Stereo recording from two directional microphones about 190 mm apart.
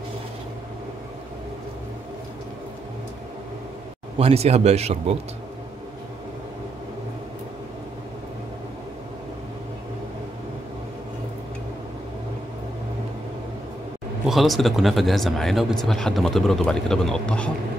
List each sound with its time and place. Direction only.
4.2 s speech: 35° right (ahead or behind)
14.2 s speech: centre (ahead or behind)